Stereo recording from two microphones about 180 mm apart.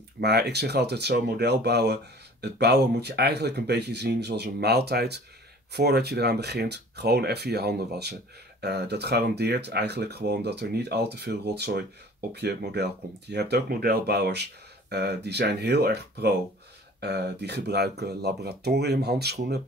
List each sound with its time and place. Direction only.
0.2 s speech: 65° right (ahead or behind)